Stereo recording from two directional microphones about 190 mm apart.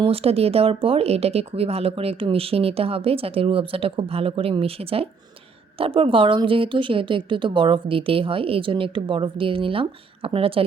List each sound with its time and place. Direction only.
0.0 s speech: 30° right (ahead or behind)